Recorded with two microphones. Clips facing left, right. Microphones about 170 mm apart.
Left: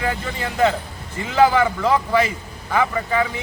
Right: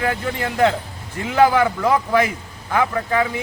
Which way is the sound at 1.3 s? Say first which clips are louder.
Right 1 dB; 10° right (ahead or behind).